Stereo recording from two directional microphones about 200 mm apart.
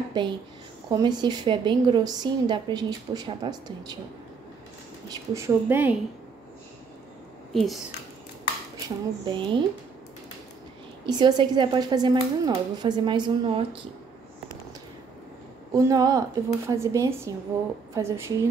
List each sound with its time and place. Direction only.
0.2 s a woman's voice: 20° right (ahead or behind)
5.1 s a woman's voice: 15° right (ahead or behind)
7.5 s speech: centre (ahead or behind)
8.8 s a woman's voice: 25° right (ahead or behind)
11.1 s a woman's voice: 20° right (ahead or behind)
15.7 s a woman's voice: 15° right (ahead or behind)